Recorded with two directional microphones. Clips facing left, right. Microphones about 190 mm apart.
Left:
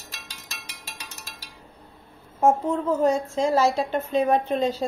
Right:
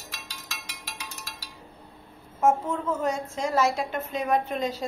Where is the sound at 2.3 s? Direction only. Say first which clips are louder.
Left 3 dB; 35° left (ahead or behind).